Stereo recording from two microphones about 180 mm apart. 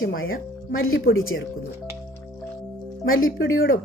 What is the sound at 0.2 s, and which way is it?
Speech, 90° left.